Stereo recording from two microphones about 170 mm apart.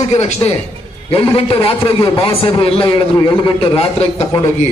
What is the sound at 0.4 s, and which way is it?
A man's voice, 25° left (ahead or behind).